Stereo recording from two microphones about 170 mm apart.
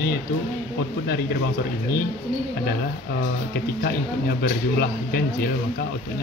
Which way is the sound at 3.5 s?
75° left (ahead or behind).